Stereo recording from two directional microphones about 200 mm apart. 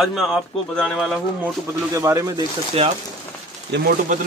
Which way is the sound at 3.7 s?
55° right (ahead or behind).